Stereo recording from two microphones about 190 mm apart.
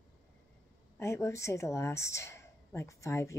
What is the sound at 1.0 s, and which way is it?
Speech, 15° left (ahead or behind).